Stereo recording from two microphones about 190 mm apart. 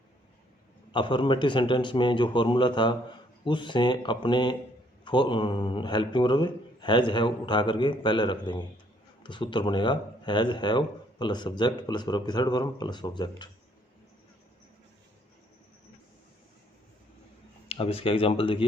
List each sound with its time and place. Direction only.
0.9 s speech: 25° left (ahead or behind)
17.7 s speech: 30° left (ahead or behind)